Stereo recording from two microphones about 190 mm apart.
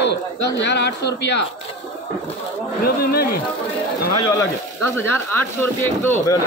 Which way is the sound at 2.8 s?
55° left (ahead or behind).